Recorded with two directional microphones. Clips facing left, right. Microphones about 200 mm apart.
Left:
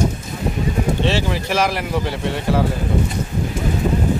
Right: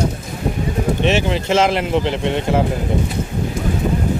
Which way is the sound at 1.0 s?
20° right (ahead or behind).